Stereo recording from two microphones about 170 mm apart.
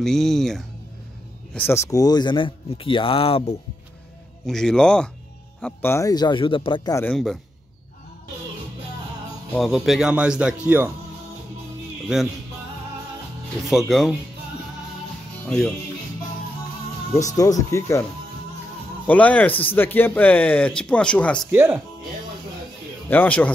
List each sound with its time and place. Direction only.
0.0 s speech: centre (ahead or behind)
1.5 s speech: 10° left (ahead or behind); by 3.5 s 35° left (ahead or behind)
4.5 s speech: centre (ahead or behind); by 7.1 s 20° left (ahead or behind)
7.1 s speech: centre (ahead or behind)
9.5 s speech: centre (ahead or behind)
12.1 s speech: 5° right (ahead or behind)
13.7 s speech: centre (ahead or behind)
15.4 s speech: 5° left (ahead or behind)
17.1 s speech: 20° left (ahead or behind)
19.0 s speech: 10° left (ahead or behind)
21.5 s speech: 15° right (ahead or behind)
23.0 s speech: 10° left (ahead or behind)